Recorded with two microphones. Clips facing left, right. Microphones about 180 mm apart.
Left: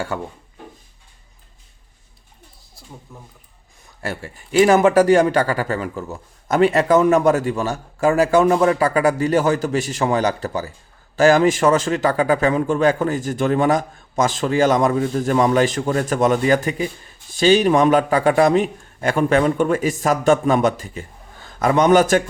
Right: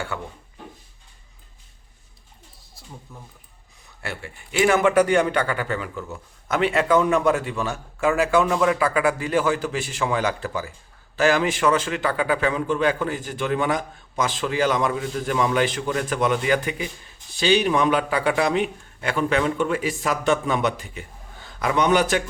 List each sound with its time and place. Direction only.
3.1 s speech: centre (ahead or behind)
4.0 s a man's voice: 40° left (ahead or behind)